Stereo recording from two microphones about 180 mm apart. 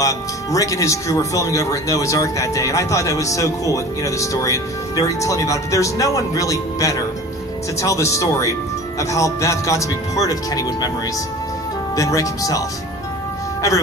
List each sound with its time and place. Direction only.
0.0 s speech: 20° left (ahead or behind)
11.9 s speech: 20° left (ahead or behind)